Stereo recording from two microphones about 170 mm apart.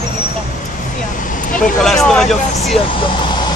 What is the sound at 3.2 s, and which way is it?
Vehicle, 25° left (ahead or behind).